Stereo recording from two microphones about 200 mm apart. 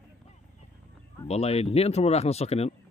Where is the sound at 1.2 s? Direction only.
30° left (ahead or behind).